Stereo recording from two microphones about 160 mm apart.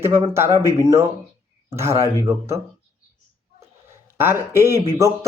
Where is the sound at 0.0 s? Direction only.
15° right (ahead or behind).